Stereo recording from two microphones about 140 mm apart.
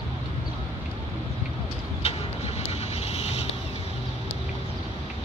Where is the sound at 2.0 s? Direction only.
50° left (ahead or behind).